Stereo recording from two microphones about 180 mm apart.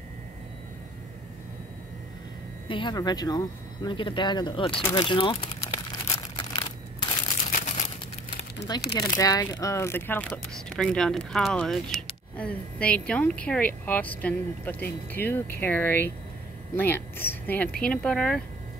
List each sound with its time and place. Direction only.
2.7 s speech: 25° left (ahead or behind)
5.9 s a sound: 25° left (ahead or behind)
7.5 s crumpling: 40° left (ahead or behind)
8.9 s speech: 25° left (ahead or behind); by 18.4 s 5° left (ahead or behind)